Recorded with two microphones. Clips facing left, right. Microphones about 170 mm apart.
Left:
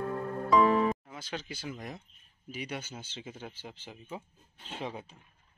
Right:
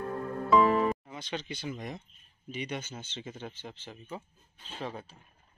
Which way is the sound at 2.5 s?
5° left (ahead or behind).